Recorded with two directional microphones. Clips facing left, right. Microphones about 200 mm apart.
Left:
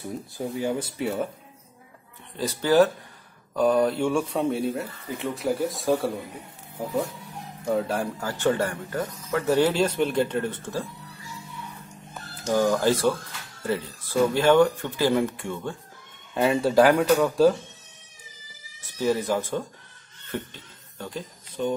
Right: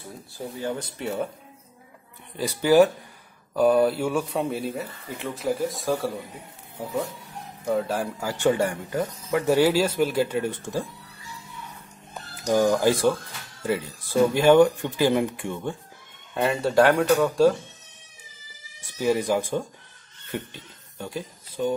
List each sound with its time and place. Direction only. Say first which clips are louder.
0.6 s speech: left 3 dB; 10° left (ahead or behind)
2.3 s speech: right 2 dB; 10° right (ahead or behind)
7.6 s speech: even; centre (ahead or behind)
12.1 s speech: right 2 dB; 15° right (ahead or behind)
16.3 s speech: left 1 dB; centre (ahead or behind)
18.8 s speech: right 1 dB; 10° right (ahead or behind)